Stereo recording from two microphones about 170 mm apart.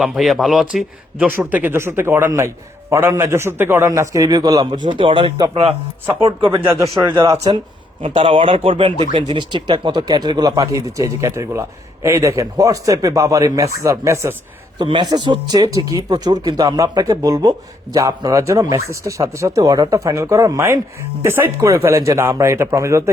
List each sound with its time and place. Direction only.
0.0 s speech: centre (ahead or behind); by 6.6 s 30° right (ahead or behind)
6.7 s speech: 15° right (ahead or behind)
8.0 s speech: 30° right (ahead or behind); by 14.3 s 15° right (ahead or behind)
14.8 s speech: 25° right (ahead or behind)